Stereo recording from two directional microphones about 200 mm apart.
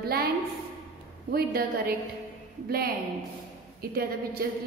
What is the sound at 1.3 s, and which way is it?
Speech, 50° right (ahead or behind).